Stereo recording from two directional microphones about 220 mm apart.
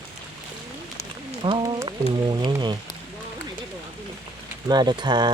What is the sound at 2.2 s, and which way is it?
Speech, 20° right (ahead or behind).